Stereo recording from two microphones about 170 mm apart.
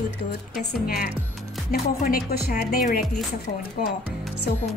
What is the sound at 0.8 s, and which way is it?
Speech, 60° left (ahead or behind).